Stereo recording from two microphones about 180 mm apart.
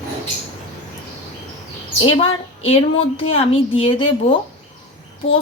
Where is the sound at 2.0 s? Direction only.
30° left (ahead or behind).